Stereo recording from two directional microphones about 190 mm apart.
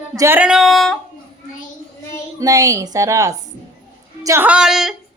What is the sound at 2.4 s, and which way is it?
A woman's voice, 15° right (ahead or behind).